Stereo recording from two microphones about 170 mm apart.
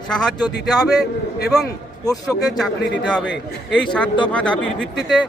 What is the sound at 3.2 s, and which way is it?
Speech, 90° left.